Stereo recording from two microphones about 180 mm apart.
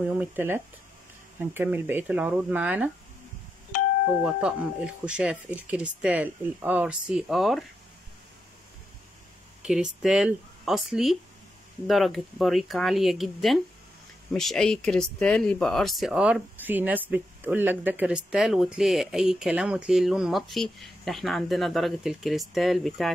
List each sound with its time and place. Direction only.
0.2 s speech: 10° right (ahead or behind)
4.2 s speech: 5° right (ahead or behind)
9.6 s speech: 5° right (ahead or behind)